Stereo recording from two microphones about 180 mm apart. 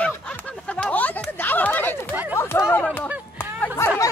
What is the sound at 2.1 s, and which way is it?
Chatter, 10° right (ahead or behind).